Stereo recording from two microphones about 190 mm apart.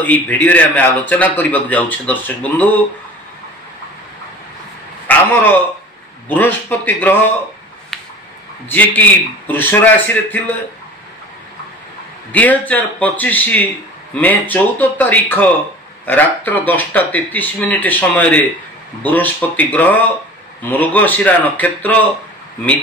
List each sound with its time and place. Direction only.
0.0 s a man's voice: 10° left (ahead or behind)
5.0 s a sound: 10° left (ahead or behind)
6.2 s a man's voice: 10° left (ahead or behind)
8.6 s a man's voice: 10° left (ahead or behind)
12.3 s a man's voice: 10° left (ahead or behind)